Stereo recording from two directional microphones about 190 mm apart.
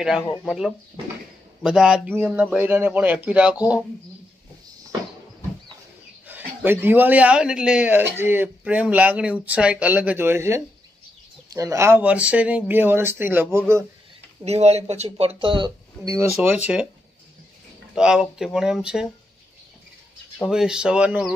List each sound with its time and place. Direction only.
0.4 s a man's voice: centre (ahead or behind)
6.2 s a man's voice: 10° right (ahead or behind)
14.4 s speech: 35° right (ahead or behind); by 16.5 s 10° right (ahead or behind)
17.9 s speech: 5° right (ahead or behind)
20.3 s speech: 5° right (ahead or behind)